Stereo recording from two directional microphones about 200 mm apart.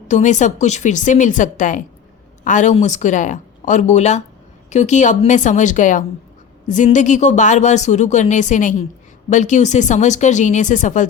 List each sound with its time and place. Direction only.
0.1 s speech: 35° left (ahead or behind)